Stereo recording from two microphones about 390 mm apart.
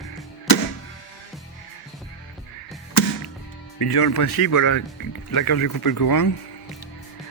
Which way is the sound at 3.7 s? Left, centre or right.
Left.